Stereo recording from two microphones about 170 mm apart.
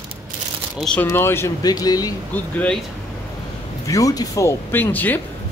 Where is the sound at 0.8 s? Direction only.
10° left (ahead or behind).